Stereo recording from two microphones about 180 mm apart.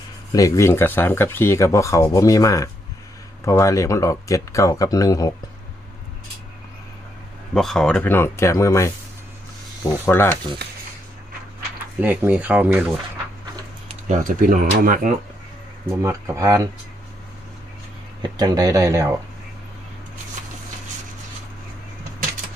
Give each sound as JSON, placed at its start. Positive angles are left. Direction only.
{"t": 0.3, "sound": "speech", "side_deg": 15}
{"t": 7.5, "sound": "speech", "side_deg": 0}
{"t": 10.1, "sound": "speech", "side_deg": 15}
{"t": 11.9, "sound": "speech", "side_deg": -10}
{"t": 14.1, "sound": "speech", "side_deg": -45}
{"t": 15.9, "sound": "speech", "side_deg": -15}
{"t": 18.2, "sound": "speech", "side_deg": -20}